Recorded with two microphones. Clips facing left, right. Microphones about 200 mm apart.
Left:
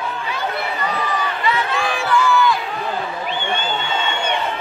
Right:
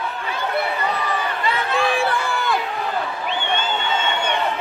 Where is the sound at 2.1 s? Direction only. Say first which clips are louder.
Left 6 dB; 55° right (ahead or behind).